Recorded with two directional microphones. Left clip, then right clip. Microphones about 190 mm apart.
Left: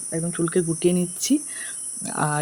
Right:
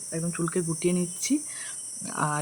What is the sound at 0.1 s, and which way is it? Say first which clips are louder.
Speech: left 6 dB; 15° left (ahead or behind).